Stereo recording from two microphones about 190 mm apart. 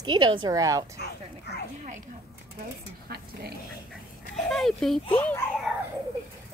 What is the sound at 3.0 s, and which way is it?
Speech, 55° right (ahead or behind).